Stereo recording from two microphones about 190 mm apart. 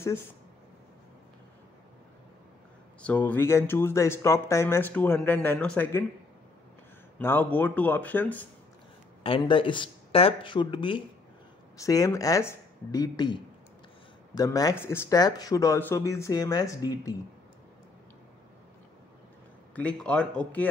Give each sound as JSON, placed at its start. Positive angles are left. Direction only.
{"t": 3.0, "sound": "speech", "side_deg": 5}
{"t": 7.2, "sound": "speech", "side_deg": 10}
{"t": 9.2, "sound": "speech", "side_deg": 25}
{"t": 19.7, "sound": "speech", "side_deg": 5}